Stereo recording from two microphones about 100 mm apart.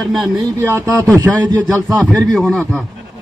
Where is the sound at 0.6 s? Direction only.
25° right (ahead or behind).